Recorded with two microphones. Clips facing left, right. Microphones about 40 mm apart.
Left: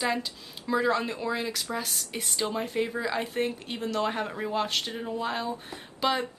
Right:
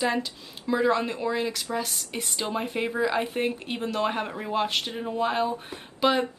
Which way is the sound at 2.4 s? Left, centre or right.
Right.